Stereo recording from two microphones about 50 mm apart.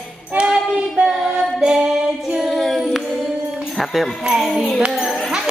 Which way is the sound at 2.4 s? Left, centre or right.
Centre.